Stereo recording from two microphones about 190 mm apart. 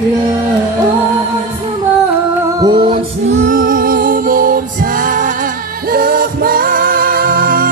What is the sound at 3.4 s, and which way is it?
Music, 45° right (ahead or behind).